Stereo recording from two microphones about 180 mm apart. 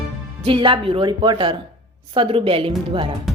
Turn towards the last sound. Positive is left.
turn(degrees=-30)  # may be behind; listen again after turning